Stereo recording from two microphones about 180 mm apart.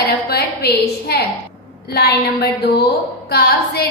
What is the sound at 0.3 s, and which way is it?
A woman's voice, 60° left (ahead or behind).